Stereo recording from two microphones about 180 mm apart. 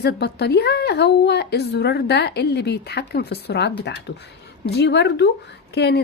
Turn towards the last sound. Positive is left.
turn(degrees=65)  # may be behind; listen again after turning